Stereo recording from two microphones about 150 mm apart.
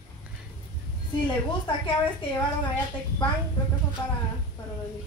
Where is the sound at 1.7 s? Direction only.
35° left (ahead or behind).